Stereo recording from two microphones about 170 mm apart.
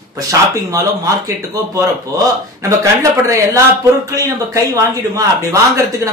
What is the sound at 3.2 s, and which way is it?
Speech, 15° right (ahead or behind).